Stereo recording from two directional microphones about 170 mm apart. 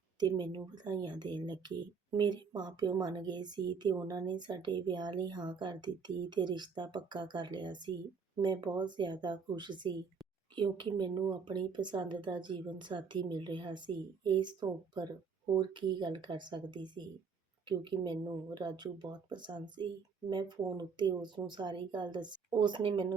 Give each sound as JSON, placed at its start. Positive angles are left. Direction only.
{"t": 0.2, "sound": "speech", "side_deg": -25}